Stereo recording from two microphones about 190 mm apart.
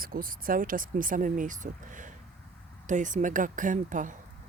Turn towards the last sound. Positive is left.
turn(degrees=-45)  # may be behind; listen again after turning